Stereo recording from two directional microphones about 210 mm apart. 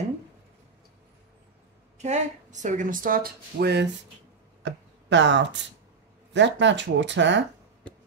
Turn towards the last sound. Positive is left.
turn(degrees=-55)  # may be behind; listen again after turning